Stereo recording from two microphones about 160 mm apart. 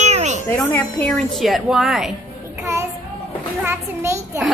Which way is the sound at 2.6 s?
15° right (ahead or behind).